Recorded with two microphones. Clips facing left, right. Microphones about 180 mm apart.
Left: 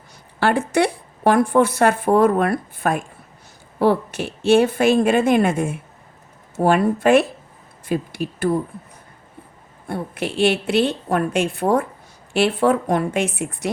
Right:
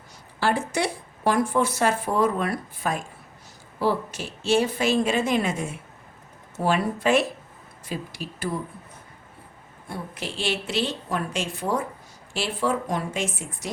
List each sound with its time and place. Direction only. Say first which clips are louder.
0.3 s speech: left 6 dB; 60° left (ahead or behind)
9.8 s speech: left 8 dB; 60° left (ahead or behind)